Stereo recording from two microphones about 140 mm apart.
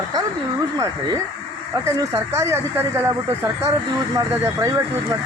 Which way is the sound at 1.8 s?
20° right (ahead or behind).